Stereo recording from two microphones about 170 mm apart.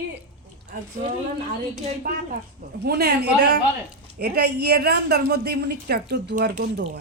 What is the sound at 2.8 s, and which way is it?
Speech, 70° right (ahead or behind).